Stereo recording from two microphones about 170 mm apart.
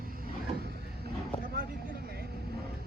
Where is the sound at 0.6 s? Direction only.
65° right (ahead or behind).